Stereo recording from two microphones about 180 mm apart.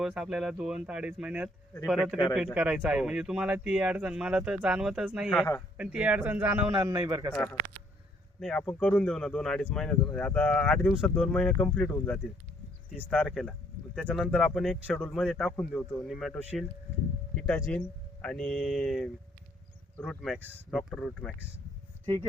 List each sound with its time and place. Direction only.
0.0 s speech: 5° right (ahead or behind)
5.3 s speech: 10° left (ahead or behind)
5.7 s a man's voice: 5° right (ahead or behind)
6.7 s a man's voice: 20° right (ahead or behind)
8.4 s speech: 5° left (ahead or behind)
17.6 s speech: 5° left (ahead or behind)